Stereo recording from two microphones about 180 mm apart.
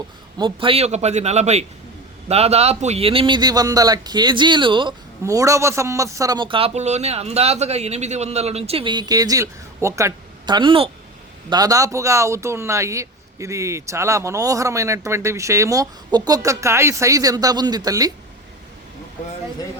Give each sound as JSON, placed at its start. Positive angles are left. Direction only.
{"t": 0.3, "sound": "a man's voice", "side_deg": -25}